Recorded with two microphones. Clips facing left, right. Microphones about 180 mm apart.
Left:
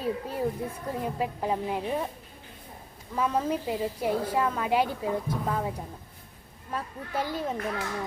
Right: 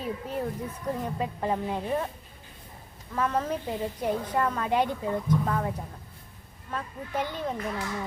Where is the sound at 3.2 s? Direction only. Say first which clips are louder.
Left 1 dB; 10° left (ahead or behind).